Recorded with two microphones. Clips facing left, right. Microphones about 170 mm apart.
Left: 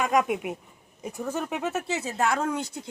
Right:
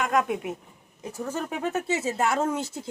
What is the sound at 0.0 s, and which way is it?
A woman's voice, 15° left (ahead or behind).